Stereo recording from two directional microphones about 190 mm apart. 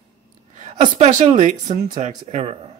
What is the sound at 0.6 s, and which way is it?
Speech, 35° right (ahead or behind).